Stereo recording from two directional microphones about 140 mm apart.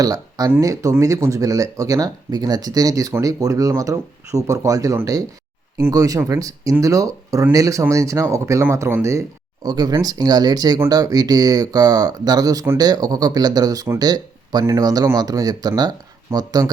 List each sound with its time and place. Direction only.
0.0 s speech: 25° right (ahead or behind)
9.6 s speech: 30° right (ahead or behind)